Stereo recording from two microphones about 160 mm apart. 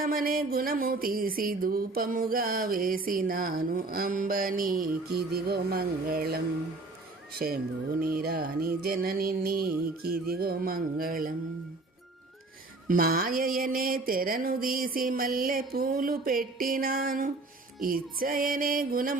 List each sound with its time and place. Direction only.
0.0 s music: 65° right (ahead or behind)
12.9 s music: 65° right (ahead or behind)